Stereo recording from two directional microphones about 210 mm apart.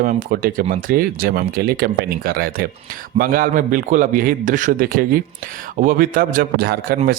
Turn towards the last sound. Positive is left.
turn(degrees=-45)  # may be behind; listen again after turning